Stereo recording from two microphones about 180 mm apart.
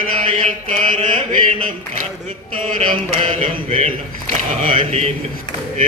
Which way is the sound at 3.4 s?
35° right (ahead or behind).